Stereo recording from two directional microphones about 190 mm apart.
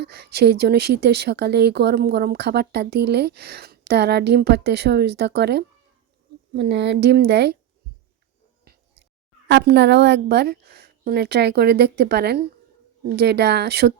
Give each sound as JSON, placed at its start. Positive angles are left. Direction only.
{"t": 0.0, "sound": "a woman's voice", "side_deg": -60}
{"t": 9.5, "sound": "a woman's voice", "side_deg": -60}